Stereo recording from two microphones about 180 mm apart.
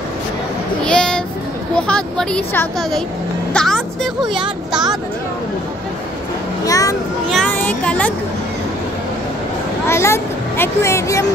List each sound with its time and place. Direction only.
0.8 s child singing: 5° left (ahead or behind)
1.8 s speech: 5° left (ahead or behind)
3.5 s a sound: centre (ahead or behind)
6.6 s a child's voice: 20° left (ahead or behind)
7.2 s a child's voice: 5° left (ahead or behind)
9.8 s speech: 15° left (ahead or behind)